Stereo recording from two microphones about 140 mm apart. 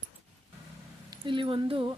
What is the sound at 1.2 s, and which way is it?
Speech, 35° right (ahead or behind).